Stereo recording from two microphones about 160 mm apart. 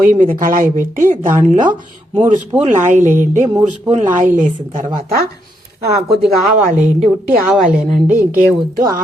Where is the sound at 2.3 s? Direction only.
50° right (ahead or behind).